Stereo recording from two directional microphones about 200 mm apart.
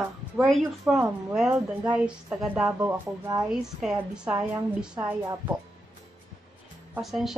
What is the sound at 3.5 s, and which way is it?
Speech, centre (ahead or behind).